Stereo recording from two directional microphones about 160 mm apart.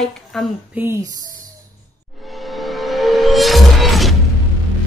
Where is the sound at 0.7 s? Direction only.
15° right (ahead or behind).